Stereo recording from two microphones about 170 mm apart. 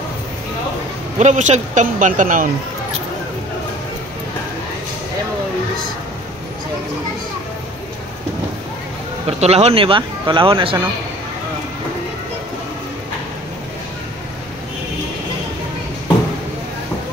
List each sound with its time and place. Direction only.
1.1 s speech: 45° right (ahead or behind)
9.4 s speech: 40° right (ahead or behind)